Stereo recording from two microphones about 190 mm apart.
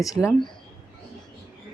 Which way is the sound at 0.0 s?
15° left (ahead or behind).